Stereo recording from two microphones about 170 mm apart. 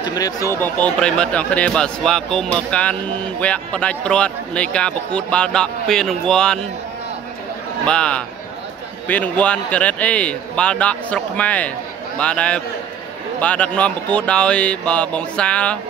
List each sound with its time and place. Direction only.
0.0 s speech: 20° left (ahead or behind)
0.6 s speech: 10° left (ahead or behind)
7.8 s a man's voice: 5° left (ahead or behind)